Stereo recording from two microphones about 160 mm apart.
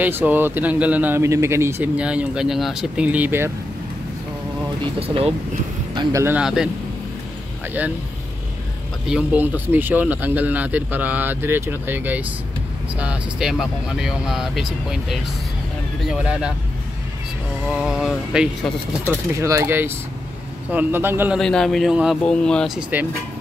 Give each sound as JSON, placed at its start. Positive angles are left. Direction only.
{"t": 0.0, "sound": "speech", "side_deg": -10}
{"t": 5.0, "sound": "speech", "side_deg": -35}
{"t": 5.9, "sound": "speech", "side_deg": -20}
{"t": 6.3, "sound": "speech", "side_deg": -5}
{"t": 9.0, "sound": "speech", "side_deg": -5}
{"t": 17.6, "sound": "speech", "side_deg": 0}
{"t": 19.3, "sound": "speech", "side_deg": -20}
{"t": 21.4, "sound": "speech", "side_deg": 5}
{"t": 22.8, "sound": "speech", "side_deg": -10}